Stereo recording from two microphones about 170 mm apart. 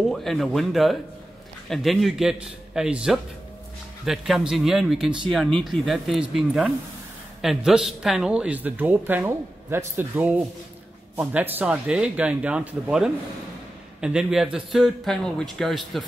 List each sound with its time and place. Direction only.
0.1 s a man's voice: centre (ahead or behind)